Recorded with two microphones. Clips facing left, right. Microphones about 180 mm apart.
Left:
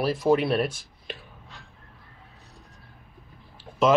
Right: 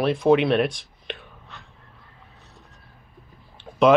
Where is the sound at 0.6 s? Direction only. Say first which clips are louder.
Right 4 dB; 70° right (ahead or behind).